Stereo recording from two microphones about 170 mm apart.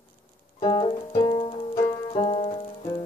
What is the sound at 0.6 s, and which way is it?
Music, 30° left (ahead or behind).